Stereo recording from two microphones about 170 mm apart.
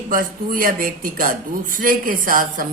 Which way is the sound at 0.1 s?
55° right (ahead or behind).